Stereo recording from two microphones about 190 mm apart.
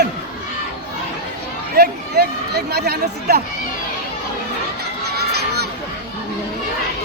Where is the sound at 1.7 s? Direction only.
55° right (ahead or behind).